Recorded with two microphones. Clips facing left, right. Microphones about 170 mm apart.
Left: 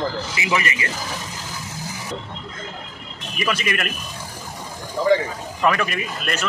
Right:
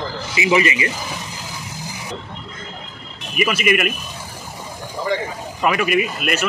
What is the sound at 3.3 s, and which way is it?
Speech, 10° right (ahead or behind).